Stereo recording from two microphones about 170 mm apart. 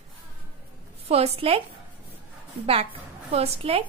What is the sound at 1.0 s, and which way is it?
Speech, 35° right (ahead or behind).